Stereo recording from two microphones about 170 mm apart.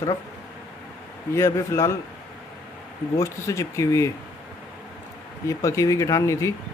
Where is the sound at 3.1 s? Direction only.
15° left (ahead or behind).